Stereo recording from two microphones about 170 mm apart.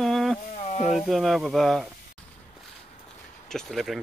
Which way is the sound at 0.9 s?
Centre (ahead or behind).